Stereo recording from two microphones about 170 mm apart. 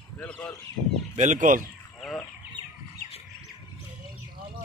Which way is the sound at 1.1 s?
50° right (ahead or behind).